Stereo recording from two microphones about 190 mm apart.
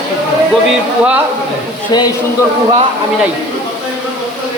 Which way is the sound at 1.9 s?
20° left (ahead or behind).